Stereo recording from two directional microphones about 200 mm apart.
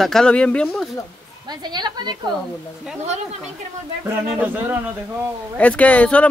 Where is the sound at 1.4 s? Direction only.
20° right (ahead or behind).